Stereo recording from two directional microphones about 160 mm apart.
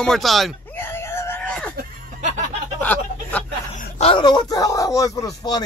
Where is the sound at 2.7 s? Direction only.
10° left (ahead or behind).